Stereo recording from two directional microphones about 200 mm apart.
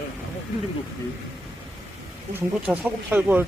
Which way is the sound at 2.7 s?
10° right (ahead or behind).